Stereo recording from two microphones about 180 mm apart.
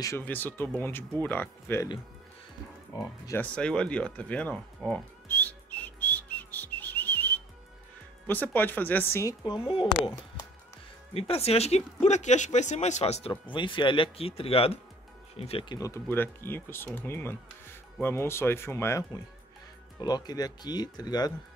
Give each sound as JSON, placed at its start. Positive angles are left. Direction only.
{"t": 0.0, "sound": "speech", "side_deg": 15}
{"t": 3.0, "sound": "music", "side_deg": 15}
{"t": 8.3, "sound": "speech", "side_deg": 10}
{"t": 15.8, "sound": "speech", "side_deg": 15}